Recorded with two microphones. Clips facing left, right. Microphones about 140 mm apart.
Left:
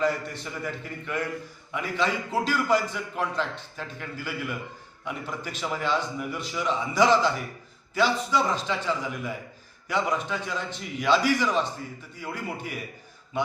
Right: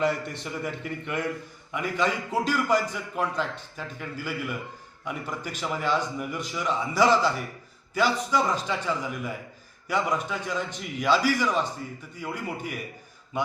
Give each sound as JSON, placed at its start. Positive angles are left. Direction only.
{"t": 0.0, "sound": "a man's voice", "side_deg": -20}